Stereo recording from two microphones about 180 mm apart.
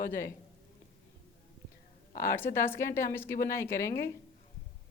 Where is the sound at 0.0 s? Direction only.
15° left (ahead or behind).